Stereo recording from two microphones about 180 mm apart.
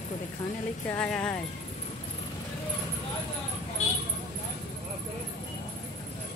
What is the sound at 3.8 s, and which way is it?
Vehicle, 40° left (ahead or behind).